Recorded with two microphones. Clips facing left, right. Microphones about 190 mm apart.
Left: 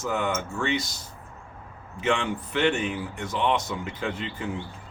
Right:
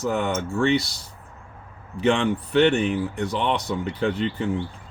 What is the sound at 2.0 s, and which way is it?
Speech, 35° right (ahead or behind).